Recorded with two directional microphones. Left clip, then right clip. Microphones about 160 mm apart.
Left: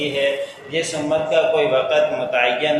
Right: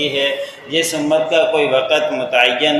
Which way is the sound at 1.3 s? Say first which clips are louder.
Even; 30° right (ahead or behind).